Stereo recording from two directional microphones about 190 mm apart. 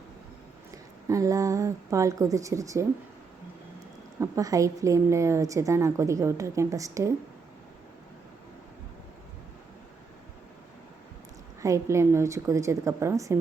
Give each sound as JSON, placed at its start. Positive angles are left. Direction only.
{"t": 0.7, "sound": "speech", "side_deg": -15}
{"t": 4.2, "sound": "a woman's voice", "side_deg": -15}
{"t": 11.6, "sound": "a woman's voice", "side_deg": -15}